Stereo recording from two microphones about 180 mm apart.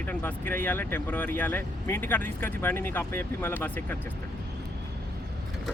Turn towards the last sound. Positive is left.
turn(degrees=10)  # may be behind; listen again after turning